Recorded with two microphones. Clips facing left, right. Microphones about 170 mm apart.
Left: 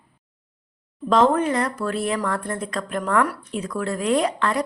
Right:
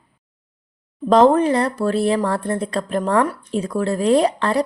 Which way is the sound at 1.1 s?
35° right (ahead or behind).